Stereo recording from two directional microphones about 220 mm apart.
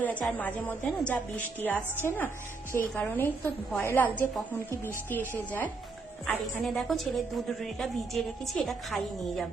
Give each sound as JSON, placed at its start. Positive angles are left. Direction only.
{"t": 0.0, "sound": "a woman's voice", "side_deg": 5}